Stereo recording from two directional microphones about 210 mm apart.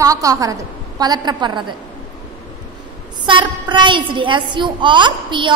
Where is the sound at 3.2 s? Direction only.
20° right (ahead or behind).